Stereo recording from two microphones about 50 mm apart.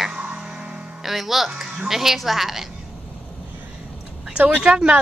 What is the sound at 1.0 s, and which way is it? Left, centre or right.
A woman's voice, centre.